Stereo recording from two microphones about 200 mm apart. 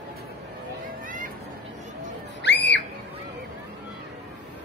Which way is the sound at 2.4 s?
60° left (ahead or behind).